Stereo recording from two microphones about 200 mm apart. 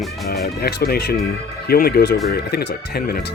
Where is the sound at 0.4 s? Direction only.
50° left (ahead or behind).